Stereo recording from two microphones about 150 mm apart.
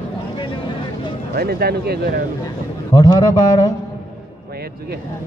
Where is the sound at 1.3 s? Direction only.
90° right.